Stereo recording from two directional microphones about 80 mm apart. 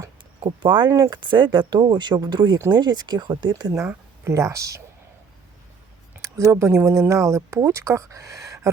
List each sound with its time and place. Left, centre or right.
0.6 s speech: right
0.9 s speech: right
1.1 s speech: right
3.8 s speech: right
6.2 s speech: right